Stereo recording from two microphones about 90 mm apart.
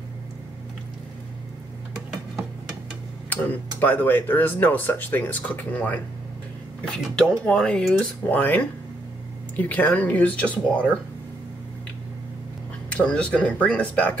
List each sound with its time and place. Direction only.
3.3 s speech: 20° left (ahead or behind)
7.2 s speech: 10° left (ahead or behind)
12.9 s speech: 15° left (ahead or behind)